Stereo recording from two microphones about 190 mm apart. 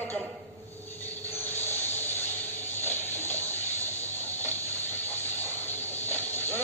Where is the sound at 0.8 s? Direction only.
10° left (ahead or behind).